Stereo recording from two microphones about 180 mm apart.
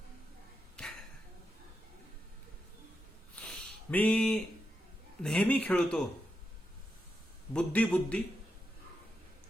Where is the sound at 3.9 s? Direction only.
10° left (ahead or behind).